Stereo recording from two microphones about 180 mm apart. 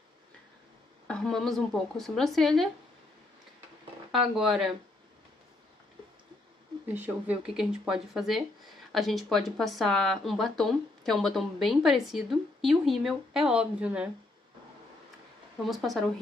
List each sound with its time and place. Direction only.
1.0 s a woman's voice: 5° left (ahead or behind)
4.1 s a woman's voice: centre (ahead or behind)
6.9 s a woman's voice: 10° right (ahead or behind)
15.6 s a woman's voice: centre (ahead or behind)